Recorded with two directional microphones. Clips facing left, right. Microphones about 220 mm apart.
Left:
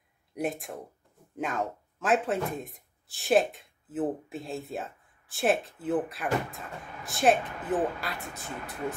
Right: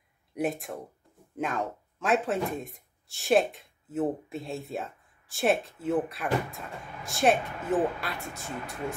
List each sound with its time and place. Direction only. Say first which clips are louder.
0.3 s speech: right 2 dB; centre (ahead or behind)